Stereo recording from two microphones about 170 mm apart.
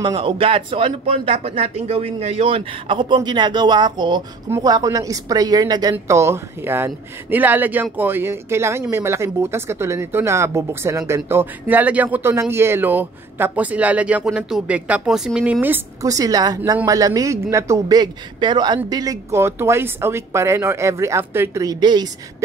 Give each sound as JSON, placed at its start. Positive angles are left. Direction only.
{"t": 0.0, "sound": "a man's voice", "side_deg": -30}